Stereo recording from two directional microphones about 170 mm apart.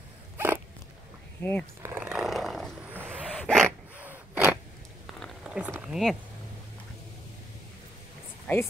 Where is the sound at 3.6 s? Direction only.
10° right (ahead or behind).